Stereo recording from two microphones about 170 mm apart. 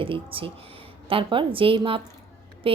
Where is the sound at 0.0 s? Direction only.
30° right (ahead or behind).